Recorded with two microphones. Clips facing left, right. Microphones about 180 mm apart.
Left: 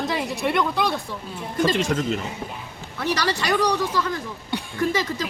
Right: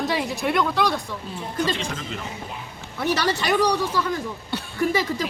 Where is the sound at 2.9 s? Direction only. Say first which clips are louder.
Right 1 dB; 20° right (ahead or behind).